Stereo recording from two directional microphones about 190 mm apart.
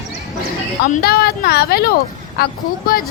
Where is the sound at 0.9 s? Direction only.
55° left (ahead or behind).